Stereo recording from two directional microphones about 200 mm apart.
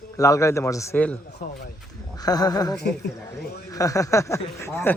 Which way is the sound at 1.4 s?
45° left (ahead or behind).